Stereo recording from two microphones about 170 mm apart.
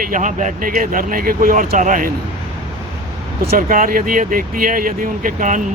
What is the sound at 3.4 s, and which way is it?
Speech, 55° right (ahead or behind).